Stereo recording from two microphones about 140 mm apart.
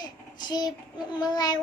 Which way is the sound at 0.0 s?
30° left (ahead or behind).